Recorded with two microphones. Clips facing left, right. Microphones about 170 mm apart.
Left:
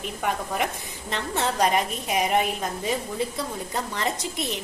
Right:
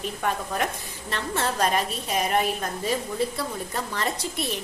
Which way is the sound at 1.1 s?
20° left (ahead or behind).